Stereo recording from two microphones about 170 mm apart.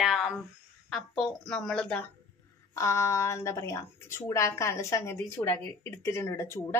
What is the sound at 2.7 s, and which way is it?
Speech, 20° left (ahead or behind).